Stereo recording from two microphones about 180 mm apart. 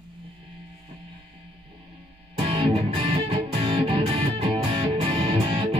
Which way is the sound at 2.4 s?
30° right (ahead or behind).